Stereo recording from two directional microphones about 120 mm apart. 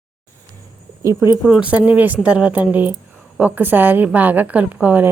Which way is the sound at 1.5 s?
10° right (ahead or behind).